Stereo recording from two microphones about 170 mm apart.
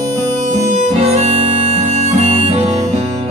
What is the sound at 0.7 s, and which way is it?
Harmonica, 40° right (ahead or behind).